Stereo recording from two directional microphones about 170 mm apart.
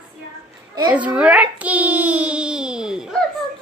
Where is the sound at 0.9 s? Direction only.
10° right (ahead or behind).